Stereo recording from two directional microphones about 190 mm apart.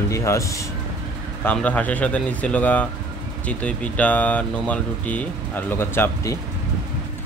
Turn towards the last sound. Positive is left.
turn(degrees=15)  # may be behind; listen again after turning